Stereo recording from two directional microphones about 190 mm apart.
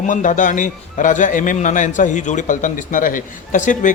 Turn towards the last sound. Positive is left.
turn(degrees=40)  # may be behind; listen again after turning